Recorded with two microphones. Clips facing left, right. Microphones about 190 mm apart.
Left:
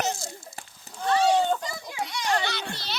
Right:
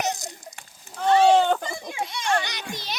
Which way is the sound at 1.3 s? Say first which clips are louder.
Right 4 dB; 80° right.